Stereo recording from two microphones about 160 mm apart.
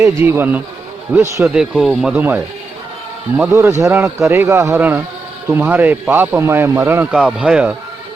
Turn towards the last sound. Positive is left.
turn(degrees=-5)  # may be behind; listen again after turning